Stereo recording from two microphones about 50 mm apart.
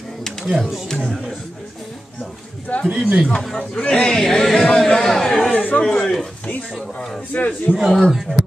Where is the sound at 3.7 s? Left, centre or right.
Centre.